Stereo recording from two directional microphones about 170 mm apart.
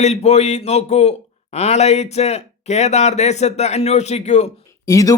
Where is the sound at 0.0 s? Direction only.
40° left (ahead or behind).